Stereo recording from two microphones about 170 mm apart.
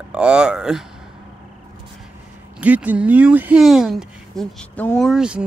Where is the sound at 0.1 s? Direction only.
5° right (ahead or behind).